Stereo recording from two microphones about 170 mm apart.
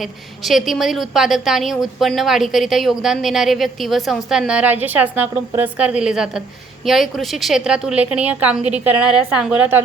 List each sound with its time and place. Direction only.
0.4 s a woman's voice: centre (ahead or behind)